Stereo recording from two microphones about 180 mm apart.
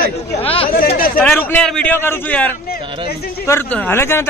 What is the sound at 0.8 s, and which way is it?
Speech, 55° left (ahead or behind).